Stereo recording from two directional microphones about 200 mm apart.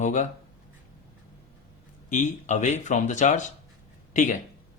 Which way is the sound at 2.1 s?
40° left (ahead or behind).